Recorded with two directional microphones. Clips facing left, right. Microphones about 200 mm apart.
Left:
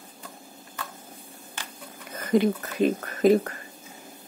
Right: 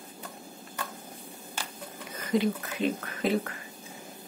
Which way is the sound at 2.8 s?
45° left (ahead or behind).